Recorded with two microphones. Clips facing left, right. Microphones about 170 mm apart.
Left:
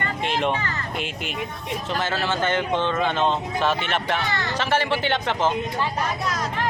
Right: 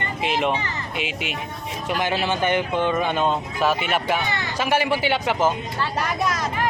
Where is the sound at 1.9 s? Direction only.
15° right (ahead or behind).